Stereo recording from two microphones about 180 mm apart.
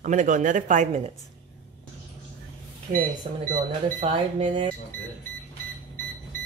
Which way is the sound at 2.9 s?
50° right (ahead or behind).